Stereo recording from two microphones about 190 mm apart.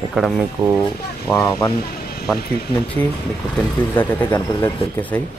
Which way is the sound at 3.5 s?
10° left (ahead or behind).